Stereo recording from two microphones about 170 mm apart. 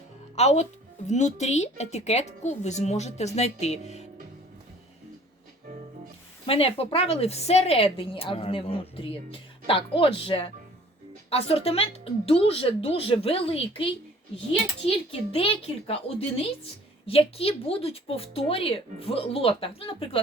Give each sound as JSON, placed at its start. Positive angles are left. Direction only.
{"t": 0.3, "sound": "a woman's voice", "side_deg": 40}
{"t": 6.4, "sound": "a woman's voice", "side_deg": 35}